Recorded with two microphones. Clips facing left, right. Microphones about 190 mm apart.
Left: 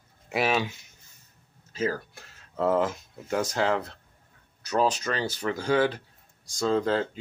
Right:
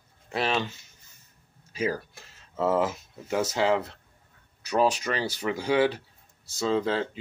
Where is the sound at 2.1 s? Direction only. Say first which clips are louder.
Even; centre (ahead or behind).